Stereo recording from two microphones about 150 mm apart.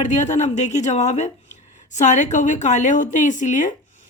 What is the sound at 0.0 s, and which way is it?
A woman's voice, 50° left (ahead or behind).